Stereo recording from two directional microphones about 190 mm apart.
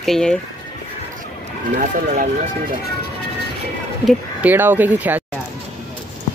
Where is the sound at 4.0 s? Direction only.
10° right (ahead or behind).